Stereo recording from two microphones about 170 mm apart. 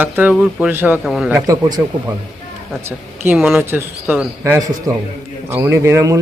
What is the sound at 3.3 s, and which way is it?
Speech, centre (ahead or behind).